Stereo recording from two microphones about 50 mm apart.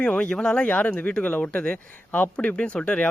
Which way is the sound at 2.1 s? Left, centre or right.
Left.